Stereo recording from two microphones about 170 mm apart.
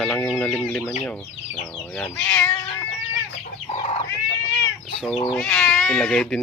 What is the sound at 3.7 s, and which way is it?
Chicken, 40° left (ahead or behind).